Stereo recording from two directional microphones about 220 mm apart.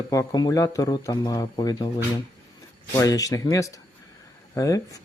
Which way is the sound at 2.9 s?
15° left (ahead or behind).